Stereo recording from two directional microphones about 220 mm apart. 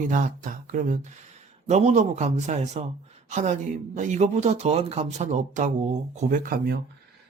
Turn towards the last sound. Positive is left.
turn(degrees=-40)  # may be behind; listen again after turning